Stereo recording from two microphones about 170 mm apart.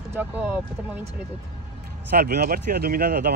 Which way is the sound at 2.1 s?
65° right (ahead or behind).